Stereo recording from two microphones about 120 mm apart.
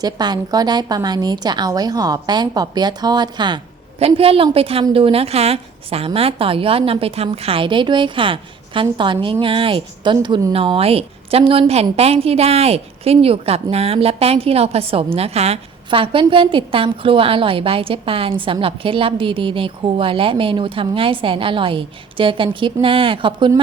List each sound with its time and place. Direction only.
0.0 s a woman's voice: 35° right (ahead or behind)
4.0 s a woman's voice: 55° right (ahead or behind)